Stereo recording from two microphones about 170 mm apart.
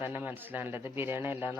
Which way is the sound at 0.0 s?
10° right (ahead or behind).